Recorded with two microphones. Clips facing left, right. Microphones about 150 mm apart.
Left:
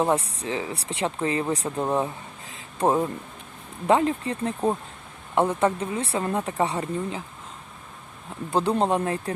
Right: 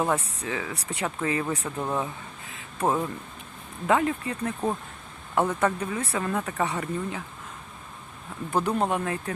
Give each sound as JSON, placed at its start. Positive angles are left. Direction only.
{"t": 0.4, "sound": "speech", "side_deg": 30}
{"t": 2.5, "sound": "a sound", "side_deg": 30}
{"t": 3.8, "sound": "speech", "side_deg": 30}
{"t": 8.5, "sound": "speech", "side_deg": 30}